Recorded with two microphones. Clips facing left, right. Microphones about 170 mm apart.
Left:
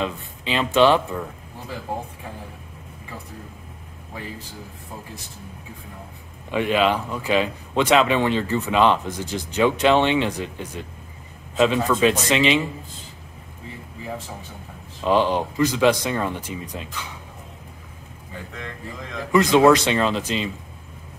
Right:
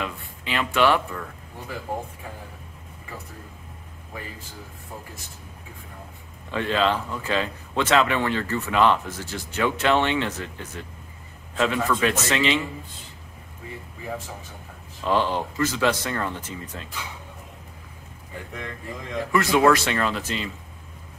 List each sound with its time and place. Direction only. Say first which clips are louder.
0.0 s speech: left 5 dB; 20° left (ahead or behind)
6.5 s speech: left 3 dB; 15° left (ahead or behind)
15.0 s speech: left 4 dB; 15° left (ahead or behind)
19.3 s speech: left 4 dB; 20° left (ahead or behind)